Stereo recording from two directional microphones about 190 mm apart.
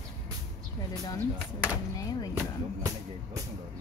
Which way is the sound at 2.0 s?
20° left (ahead or behind).